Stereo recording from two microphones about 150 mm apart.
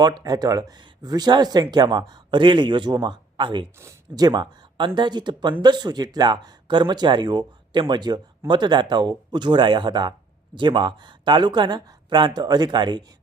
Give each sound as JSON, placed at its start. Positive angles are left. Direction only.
{"t": 0.0, "sound": "speech", "side_deg": -25}
{"t": 3.8, "sound": "speech", "side_deg": -20}